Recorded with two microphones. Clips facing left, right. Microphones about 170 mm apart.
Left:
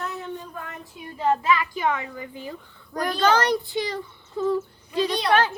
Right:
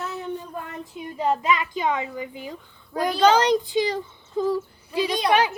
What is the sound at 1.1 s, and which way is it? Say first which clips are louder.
A child's voice: left 1 dB; 20° right (ahead or behind).